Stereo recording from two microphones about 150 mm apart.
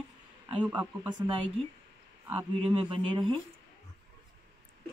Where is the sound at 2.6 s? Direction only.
40° right (ahead or behind).